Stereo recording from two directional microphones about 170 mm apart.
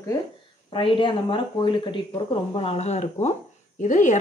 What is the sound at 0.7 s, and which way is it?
A woman's voice, 30° left (ahead or behind).